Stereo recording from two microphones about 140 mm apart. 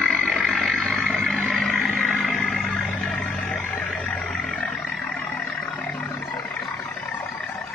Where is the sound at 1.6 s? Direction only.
10° left (ahead or behind).